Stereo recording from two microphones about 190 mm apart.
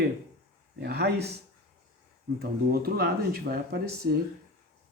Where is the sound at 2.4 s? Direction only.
55° right (ahead or behind).